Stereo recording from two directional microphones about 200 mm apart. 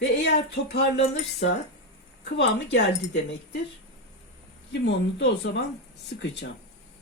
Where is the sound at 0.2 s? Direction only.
55° left (ahead or behind).